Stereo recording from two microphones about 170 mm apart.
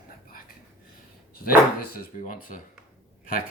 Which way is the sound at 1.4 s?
60° left (ahead or behind).